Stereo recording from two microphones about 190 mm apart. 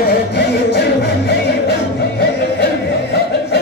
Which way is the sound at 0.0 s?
60° left (ahead or behind).